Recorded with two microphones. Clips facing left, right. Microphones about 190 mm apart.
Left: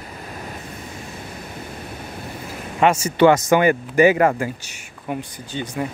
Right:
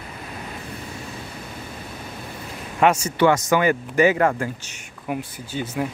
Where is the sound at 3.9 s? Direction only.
10° left (ahead or behind).